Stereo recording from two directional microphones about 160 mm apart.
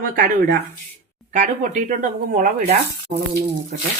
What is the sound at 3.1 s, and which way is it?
Speech, 45° right (ahead or behind).